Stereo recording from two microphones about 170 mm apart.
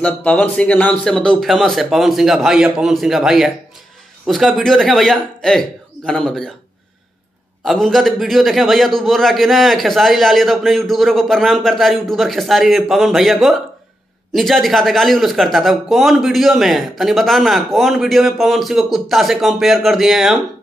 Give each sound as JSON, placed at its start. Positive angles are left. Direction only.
{"t": 0.0, "sound": "speech", "side_deg": 5}
{"t": 7.6, "sound": "speech", "side_deg": 0}